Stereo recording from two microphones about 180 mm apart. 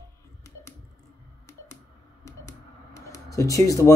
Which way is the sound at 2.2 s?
15° left (ahead or behind).